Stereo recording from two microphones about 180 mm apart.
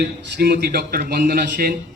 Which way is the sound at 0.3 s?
60° right (ahead or behind).